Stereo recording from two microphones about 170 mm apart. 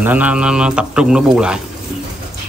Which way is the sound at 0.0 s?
10° right (ahead or behind).